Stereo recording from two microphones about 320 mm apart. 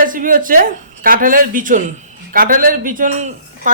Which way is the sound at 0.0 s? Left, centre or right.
Right.